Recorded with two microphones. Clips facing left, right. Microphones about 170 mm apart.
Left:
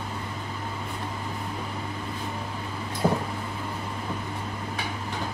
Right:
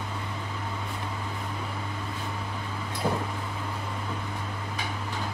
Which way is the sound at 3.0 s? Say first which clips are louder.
Left 4 dB; 55° left (ahead or behind).